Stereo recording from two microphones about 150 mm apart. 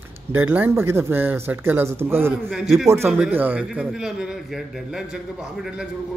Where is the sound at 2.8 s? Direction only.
15° right (ahead or behind).